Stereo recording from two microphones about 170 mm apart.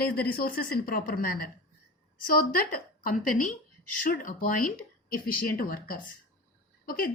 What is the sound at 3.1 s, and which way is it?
A woman's voice, 50° left (ahead or behind).